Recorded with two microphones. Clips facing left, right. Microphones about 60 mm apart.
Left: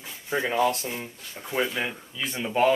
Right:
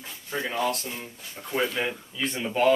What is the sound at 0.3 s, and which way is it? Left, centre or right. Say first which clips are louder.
Speech: left 4 dB; centre.